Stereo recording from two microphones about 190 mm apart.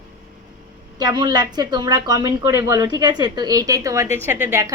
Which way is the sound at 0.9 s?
20° right (ahead or behind).